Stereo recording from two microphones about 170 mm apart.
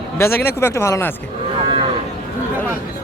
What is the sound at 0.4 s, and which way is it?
Speech, 15° left (ahead or behind).